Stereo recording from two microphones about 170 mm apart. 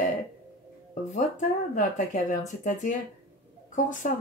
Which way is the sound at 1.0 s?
45° left (ahead or behind).